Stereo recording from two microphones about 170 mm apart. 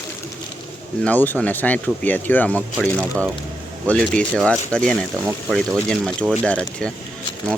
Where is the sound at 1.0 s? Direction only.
10° left (ahead or behind).